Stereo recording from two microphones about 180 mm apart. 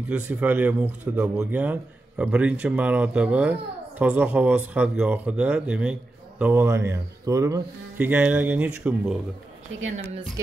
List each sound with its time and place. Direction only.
0.1 s speech: 10° right (ahead or behind)